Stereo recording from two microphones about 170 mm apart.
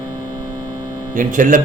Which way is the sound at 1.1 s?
50° right (ahead or behind).